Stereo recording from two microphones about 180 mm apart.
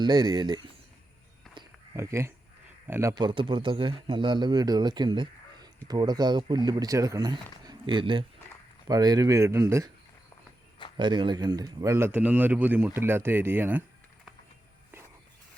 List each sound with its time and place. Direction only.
0.0 s a man's voice: 25° right (ahead or behind)
1.5 s music: centre (ahead or behind)
2.0 s a man's voice: 15° right (ahead or behind)
7.6 s a sound: 25° right (ahead or behind)
8.9 s speech: 20° right (ahead or behind)
10.9 s speech: 25° right (ahead or behind); by 13.8 s 10° right (ahead or behind)